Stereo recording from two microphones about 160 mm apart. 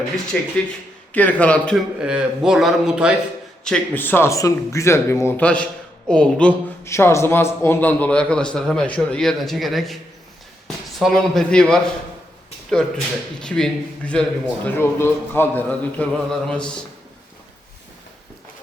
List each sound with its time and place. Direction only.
0.3 s a man's voice: 5° left (ahead or behind)
2.0 s a man's voice: 5° right (ahead or behind)
3.6 s a man's voice: 10° left (ahead or behind)
11.0 s a man's voice: 5° left (ahead or behind)
13.4 s a man's voice: 5° left (ahead or behind)